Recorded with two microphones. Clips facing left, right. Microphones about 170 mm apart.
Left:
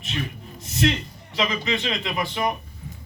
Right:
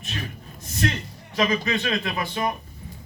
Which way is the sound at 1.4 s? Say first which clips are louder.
Right 2 dB; 20° left (ahead or behind).